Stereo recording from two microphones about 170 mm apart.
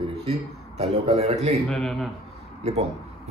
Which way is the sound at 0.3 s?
40° right (ahead or behind).